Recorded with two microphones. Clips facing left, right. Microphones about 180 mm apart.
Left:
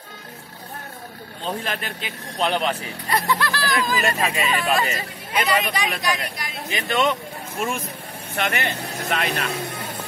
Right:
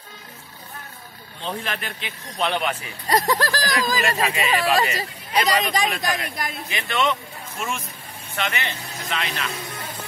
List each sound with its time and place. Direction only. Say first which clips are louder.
1.6 s speech: left 2 dB; 40° left (ahead or behind)
3.1 s speech: right 2 dB; 40° right (ahead or behind)
6.7 s speech: left 3 dB; 45° left (ahead or behind)
8.7 s speech: left 5 dB; 70° left (ahead or behind)
9.1 s speech: left 4 dB; 45° left (ahead or behind)